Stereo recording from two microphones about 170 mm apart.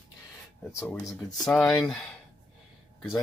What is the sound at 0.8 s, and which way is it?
Speech, 20° left (ahead or behind).